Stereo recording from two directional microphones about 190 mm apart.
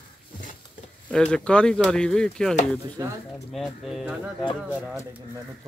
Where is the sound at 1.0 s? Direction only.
5° left (ahead or behind).